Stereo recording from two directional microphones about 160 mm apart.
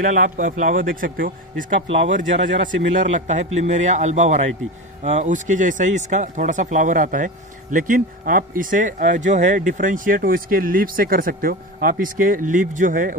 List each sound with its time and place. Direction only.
0.0 s speech: 60° right (ahead or behind)
2.0 s speech: 55° right (ahead or behind)